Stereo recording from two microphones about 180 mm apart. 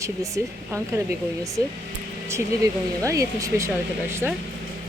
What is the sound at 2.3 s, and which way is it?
Speech, 15° right (ahead or behind).